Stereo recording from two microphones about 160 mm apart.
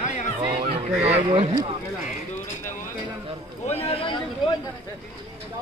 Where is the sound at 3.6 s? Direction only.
40° left (ahead or behind).